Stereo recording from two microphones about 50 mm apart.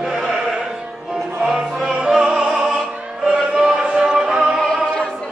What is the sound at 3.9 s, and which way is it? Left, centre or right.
Music, centre.